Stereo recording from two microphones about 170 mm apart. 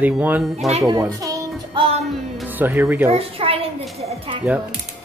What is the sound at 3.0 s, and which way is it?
Speech, 35° right (ahead or behind).